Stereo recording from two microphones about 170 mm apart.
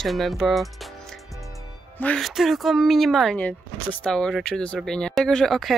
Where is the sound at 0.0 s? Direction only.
Centre (ahead or behind).